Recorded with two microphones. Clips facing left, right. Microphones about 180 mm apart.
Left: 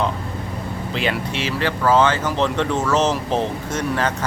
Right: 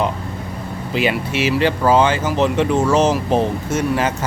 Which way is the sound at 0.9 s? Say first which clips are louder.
Right 5 dB; 5° right (ahead or behind).